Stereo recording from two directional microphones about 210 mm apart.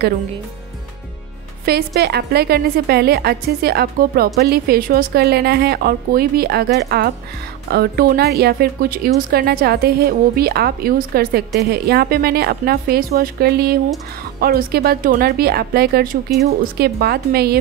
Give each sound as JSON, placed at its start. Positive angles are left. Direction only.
{"t": 1.7, "sound": "a woman's voice", "side_deg": -50}